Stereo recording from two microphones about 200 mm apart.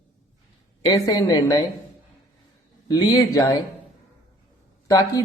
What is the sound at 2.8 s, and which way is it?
Speech, 20° left (ahead or behind).